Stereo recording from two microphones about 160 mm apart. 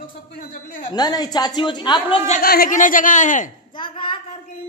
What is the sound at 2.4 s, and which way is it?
Speech, 70° left (ahead or behind).